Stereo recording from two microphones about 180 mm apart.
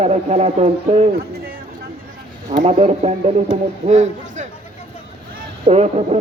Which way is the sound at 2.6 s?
35° right (ahead or behind).